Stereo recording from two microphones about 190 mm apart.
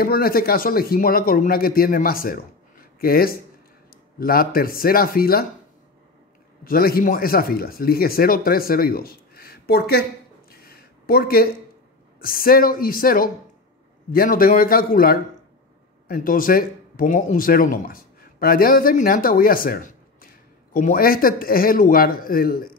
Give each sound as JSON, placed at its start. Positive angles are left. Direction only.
{"t": 0.0, "sound": "speech", "side_deg": 55}
{"t": 6.6, "sound": "speech", "side_deg": 50}
{"t": 10.5, "sound": "a sound", "side_deg": 55}
{"t": 12.2, "sound": "speech", "side_deg": 50}